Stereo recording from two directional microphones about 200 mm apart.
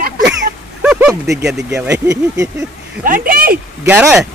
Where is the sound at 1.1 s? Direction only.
15° right (ahead or behind).